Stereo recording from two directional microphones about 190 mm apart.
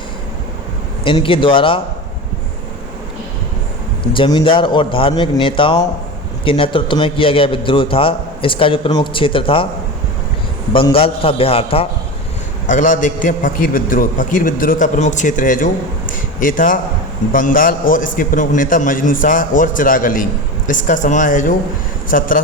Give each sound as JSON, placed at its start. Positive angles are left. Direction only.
{"t": 1.0, "sound": "a man's voice", "side_deg": 25}
{"t": 4.1, "sound": "a man's voice", "side_deg": 25}
{"t": 10.7, "sound": "a man's voice", "side_deg": 30}
{"t": 12.6, "sound": "a man's voice", "side_deg": 40}